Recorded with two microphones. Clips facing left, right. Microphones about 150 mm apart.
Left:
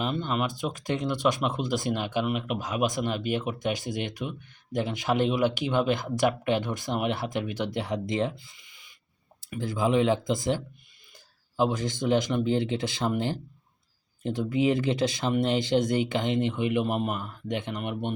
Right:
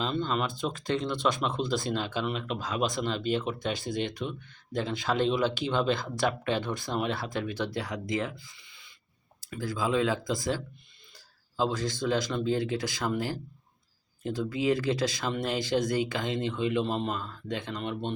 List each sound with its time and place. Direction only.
0.0 s speech: 15° left (ahead or behind)